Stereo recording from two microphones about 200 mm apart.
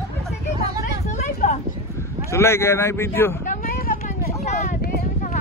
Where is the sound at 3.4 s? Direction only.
45° left (ahead or behind).